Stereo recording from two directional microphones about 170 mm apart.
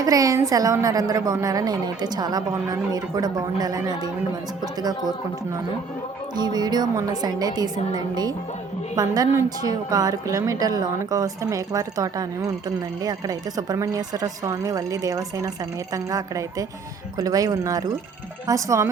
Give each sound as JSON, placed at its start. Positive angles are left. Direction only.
{"t": 0.0, "sound": "a woman's voice", "side_deg": -20}
{"t": 6.3, "sound": "a woman's voice", "side_deg": -25}